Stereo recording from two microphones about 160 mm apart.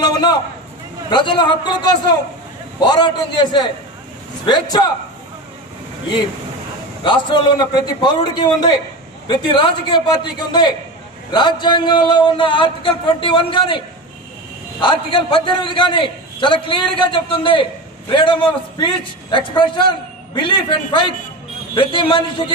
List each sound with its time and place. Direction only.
0.0 s a sound: 25° left (ahead or behind)
1.1 s a man's voice: 30° left (ahead or behind)
7.0 s a man's voice: 30° left (ahead or behind)